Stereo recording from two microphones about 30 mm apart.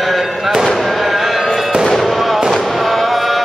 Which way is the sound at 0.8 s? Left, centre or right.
Centre.